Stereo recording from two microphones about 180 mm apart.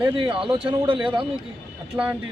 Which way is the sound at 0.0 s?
30° right (ahead or behind).